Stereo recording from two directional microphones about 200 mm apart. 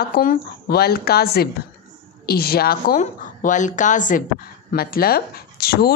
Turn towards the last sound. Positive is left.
turn(degrees=50)  # may be behind; listen again after turning